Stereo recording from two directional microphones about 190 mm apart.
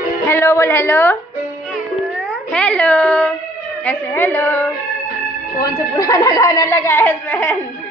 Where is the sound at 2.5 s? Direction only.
5° left (ahead or behind).